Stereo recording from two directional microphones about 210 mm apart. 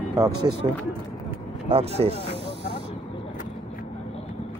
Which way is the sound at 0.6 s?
20° right (ahead or behind).